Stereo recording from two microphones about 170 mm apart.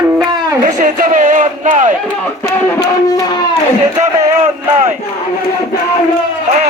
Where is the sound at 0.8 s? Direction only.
45° right (ahead or behind).